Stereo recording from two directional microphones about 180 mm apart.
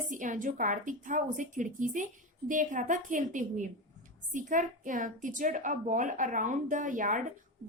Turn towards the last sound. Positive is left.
turn(degrees=-45)  # may be behind; listen again after turning